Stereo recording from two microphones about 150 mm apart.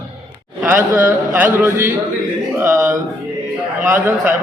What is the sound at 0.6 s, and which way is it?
A man's voice, 15° right (ahead or behind).